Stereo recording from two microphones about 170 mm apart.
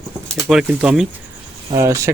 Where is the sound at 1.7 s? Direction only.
15° right (ahead or behind).